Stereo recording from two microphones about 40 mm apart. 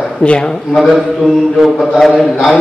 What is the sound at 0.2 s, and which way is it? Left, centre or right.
Speech, left.